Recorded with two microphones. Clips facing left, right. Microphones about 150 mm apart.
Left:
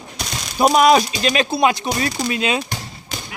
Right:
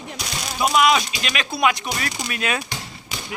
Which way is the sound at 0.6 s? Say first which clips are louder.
Left 5 dB; 40° left (ahead or behind).